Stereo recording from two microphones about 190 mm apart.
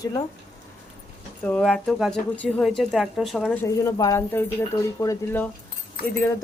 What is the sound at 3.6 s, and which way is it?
Speech, 15° left (ahead or behind).